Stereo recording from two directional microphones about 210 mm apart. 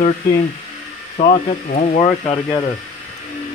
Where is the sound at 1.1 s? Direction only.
35° left (ahead or behind).